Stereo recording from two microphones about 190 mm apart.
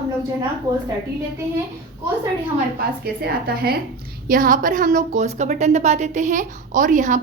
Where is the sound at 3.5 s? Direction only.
55° right (ahead or behind).